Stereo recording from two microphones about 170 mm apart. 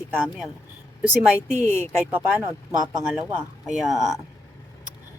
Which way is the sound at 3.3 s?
5° right (ahead or behind).